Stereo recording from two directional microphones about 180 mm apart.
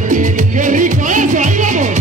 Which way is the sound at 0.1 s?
45° right (ahead or behind).